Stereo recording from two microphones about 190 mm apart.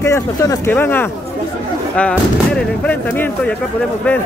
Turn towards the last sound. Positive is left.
turn(degrees=10)  # may be behind; listen again after turning